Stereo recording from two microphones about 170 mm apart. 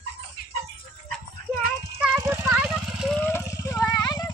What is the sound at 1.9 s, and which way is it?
Clip-clop, 10° right (ahead or behind).